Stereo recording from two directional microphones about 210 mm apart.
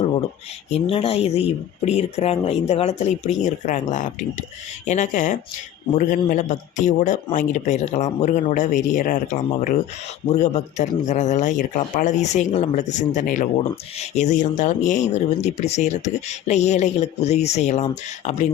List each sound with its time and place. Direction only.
0.7 s speech: 30° left (ahead or behind)